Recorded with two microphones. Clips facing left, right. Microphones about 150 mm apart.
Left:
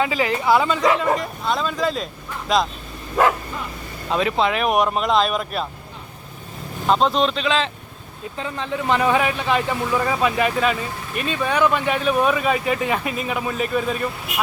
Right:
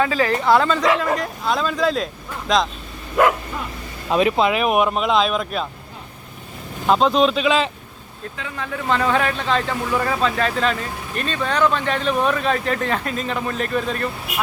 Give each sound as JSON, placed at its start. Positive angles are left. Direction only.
{"t": 0.0, "sound": "speech", "side_deg": 15}
{"t": 0.4, "sound": "speech", "side_deg": 5}
{"t": 4.1, "sound": "speech", "side_deg": -15}
{"t": 6.8, "sound": "speech", "side_deg": 0}
{"t": 8.4, "sound": "speech", "side_deg": 30}